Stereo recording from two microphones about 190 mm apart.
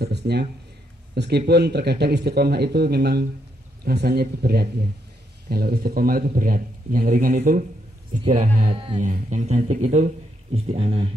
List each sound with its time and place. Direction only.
0.0 s a sound: 60° right (ahead or behind)
1.1 s a man's voice: 60° right (ahead or behind); by 9.0 s 30° right (ahead or behind)
9.0 s speech: 40° right (ahead or behind)